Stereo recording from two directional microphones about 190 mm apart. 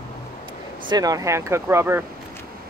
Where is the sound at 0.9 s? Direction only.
20° right (ahead or behind).